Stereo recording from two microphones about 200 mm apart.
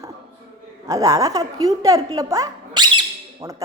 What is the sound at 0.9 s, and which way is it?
A woman's voice, 15° right (ahead or behind).